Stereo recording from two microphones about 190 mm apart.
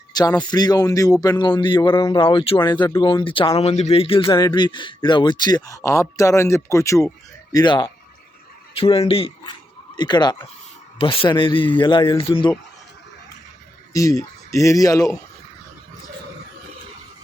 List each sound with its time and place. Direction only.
0.1 s a sound: 20° left (ahead or behind)
0.5 s a man's voice: 20° left (ahead or behind)
13.9 s speech: 15° left (ahead or behind)